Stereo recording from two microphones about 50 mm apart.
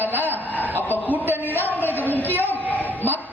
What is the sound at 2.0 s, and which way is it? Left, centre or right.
Speech, left.